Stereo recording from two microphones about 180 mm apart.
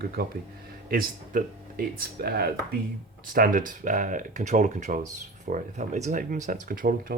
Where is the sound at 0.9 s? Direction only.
55° right (ahead or behind).